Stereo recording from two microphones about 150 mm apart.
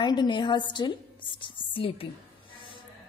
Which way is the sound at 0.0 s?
30° left (ahead or behind).